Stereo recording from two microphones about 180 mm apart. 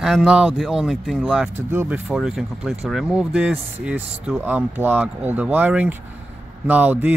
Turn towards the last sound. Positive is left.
turn(degrees=-10)  # may be behind; listen again after turning